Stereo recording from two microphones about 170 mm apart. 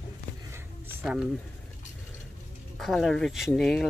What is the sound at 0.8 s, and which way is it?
Music, 5° right (ahead or behind).